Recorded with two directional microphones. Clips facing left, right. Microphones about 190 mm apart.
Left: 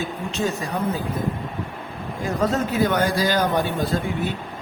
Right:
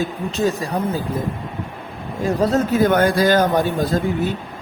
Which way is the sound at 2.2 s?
35° right (ahead or behind).